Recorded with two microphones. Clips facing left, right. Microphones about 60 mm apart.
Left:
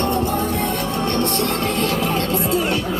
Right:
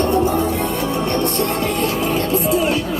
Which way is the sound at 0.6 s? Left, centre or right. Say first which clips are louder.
Right 2 dB; centre.